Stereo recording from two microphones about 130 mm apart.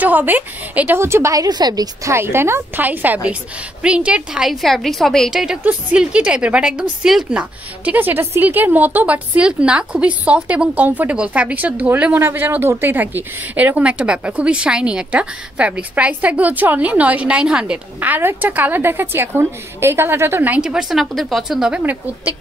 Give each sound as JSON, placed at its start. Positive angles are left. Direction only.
{"t": 0.0, "sound": "a woman's voice", "side_deg": -15}
{"t": 2.1, "sound": "a woman's voice", "side_deg": -20}